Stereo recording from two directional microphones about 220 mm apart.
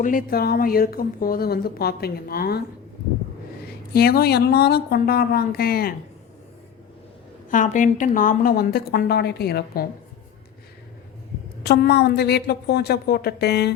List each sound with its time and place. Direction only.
0.0 s a woman's voice: 40° left (ahead or behind)
3.9 s a woman's voice: 45° left (ahead or behind)
7.5 s a woman's voice: 35° left (ahead or behind)
11.6 s a woman's voice: 50° left (ahead or behind)